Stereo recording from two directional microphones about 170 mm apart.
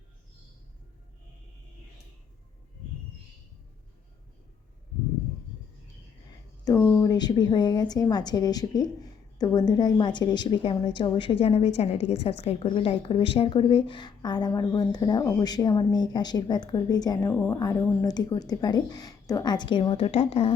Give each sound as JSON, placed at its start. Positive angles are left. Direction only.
{"t": 6.7, "sound": "a sound", "side_deg": 15}
{"t": 7.1, "sound": "a woman's voice", "side_deg": 25}
{"t": 17.2, "sound": "a woman's voice", "side_deg": 10}